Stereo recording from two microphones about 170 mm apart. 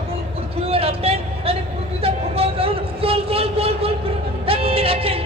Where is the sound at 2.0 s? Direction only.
35° right (ahead or behind).